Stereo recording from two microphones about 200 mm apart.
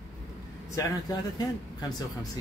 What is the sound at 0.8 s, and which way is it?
Speech, 20° left (ahead or behind).